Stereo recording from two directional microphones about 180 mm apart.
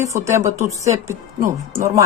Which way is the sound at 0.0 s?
15° right (ahead or behind).